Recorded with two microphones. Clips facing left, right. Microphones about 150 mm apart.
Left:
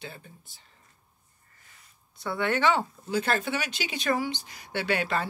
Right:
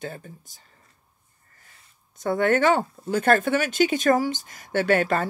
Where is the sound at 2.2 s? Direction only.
45° right (ahead or behind).